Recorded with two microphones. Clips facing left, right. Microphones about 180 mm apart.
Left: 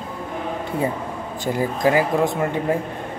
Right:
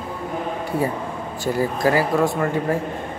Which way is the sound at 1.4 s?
20° left (ahead or behind).